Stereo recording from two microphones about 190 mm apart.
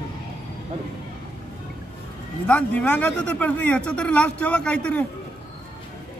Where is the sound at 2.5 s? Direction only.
5° left (ahead or behind).